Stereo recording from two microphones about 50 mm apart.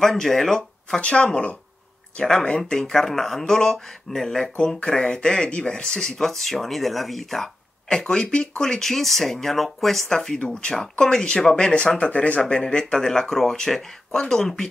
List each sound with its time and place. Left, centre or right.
0.0 s speech: centre
0.8 s speech: left; by 7.5 s centre
8.1 s speech: centre